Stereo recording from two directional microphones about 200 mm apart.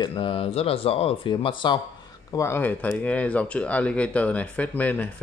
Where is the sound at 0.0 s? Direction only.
25° left (ahead or behind).